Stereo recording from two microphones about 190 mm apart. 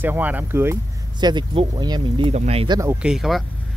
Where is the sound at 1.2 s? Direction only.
25° right (ahead or behind).